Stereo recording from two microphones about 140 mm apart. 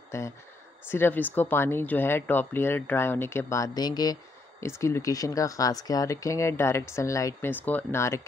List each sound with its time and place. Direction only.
0.1 s speech: 20° left (ahead or behind)